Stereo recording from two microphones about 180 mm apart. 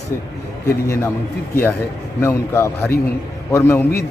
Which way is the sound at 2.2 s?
15° left (ahead or behind).